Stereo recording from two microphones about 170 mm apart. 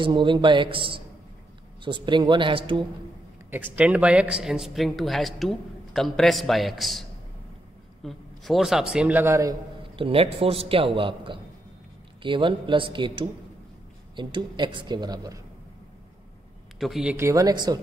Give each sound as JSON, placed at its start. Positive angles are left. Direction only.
{"t": 0.0, "sound": "a man's voice", "side_deg": -30}
{"t": 3.7, "sound": "speech", "side_deg": -5}
{"t": 9.9, "sound": "a man's voice", "side_deg": -35}
{"t": 16.8, "sound": "speech", "side_deg": -5}
{"t": 17.2, "sound": "a man's voice", "side_deg": -20}